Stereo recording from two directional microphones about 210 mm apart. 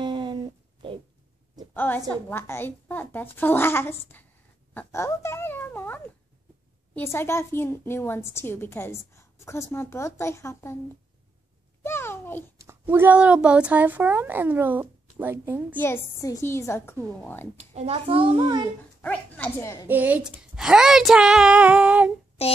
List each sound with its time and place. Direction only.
0.0 s a sound: 20° right (ahead or behind)
1.7 s a sound: 10° left (ahead or behind)
2.0 s a woman's voice: 10° left (ahead or behind)
7.0 s a woman's voice: 10° left (ahead or behind)
11.8 s a sound: 10° left (ahead or behind)
12.5 s speech: 10° right (ahead or behind)
15.7 s a woman's voice: 10° left (ahead or behind)
17.6 s a child's voice: 30° right (ahead or behind)
18.9 s a woman's voice: 5° left (ahead or behind)
19.9 s speech: 10° right (ahead or behind)
22.4 s child singing: 30° left (ahead or behind)